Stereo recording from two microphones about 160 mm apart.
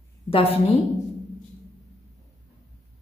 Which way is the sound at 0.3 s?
35° left (ahead or behind).